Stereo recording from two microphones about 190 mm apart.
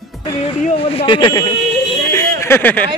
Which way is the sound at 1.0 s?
25° left (ahead or behind).